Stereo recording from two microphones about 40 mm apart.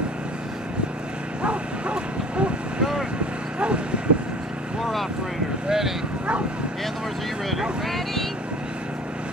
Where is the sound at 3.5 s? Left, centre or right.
Right.